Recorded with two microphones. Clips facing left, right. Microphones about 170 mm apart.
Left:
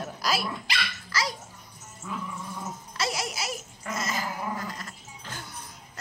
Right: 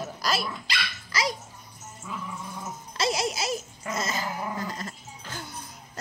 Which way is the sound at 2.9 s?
20° right (ahead or behind).